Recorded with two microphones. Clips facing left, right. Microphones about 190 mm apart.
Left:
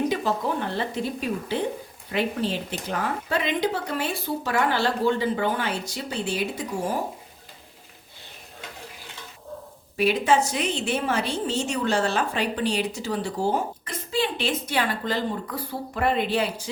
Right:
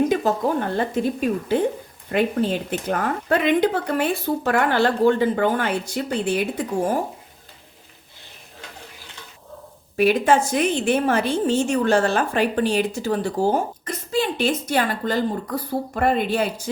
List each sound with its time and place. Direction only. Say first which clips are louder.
0.1 s a woman's voice: right 5 dB; 45° right (ahead or behind)
10.0 s a woman's voice: right 4 dB; 50° right (ahead or behind)